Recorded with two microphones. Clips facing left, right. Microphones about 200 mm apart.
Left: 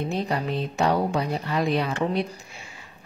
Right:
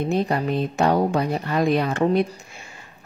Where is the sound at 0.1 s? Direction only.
50° right (ahead or behind).